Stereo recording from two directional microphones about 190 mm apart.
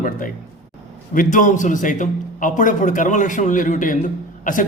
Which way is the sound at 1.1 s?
45° left (ahead or behind).